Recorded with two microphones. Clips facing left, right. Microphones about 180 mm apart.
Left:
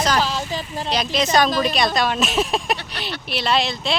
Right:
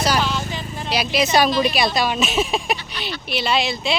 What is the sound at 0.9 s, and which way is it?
Speech, 10° right (ahead or behind).